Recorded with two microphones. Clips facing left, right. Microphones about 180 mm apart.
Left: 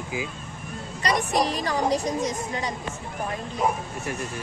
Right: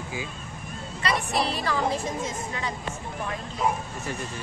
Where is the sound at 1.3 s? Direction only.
40° left (ahead or behind).